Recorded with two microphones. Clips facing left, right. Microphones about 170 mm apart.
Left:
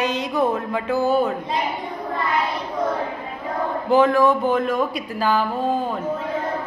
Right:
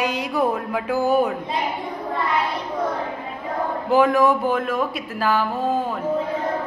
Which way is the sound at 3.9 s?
15° right (ahead or behind).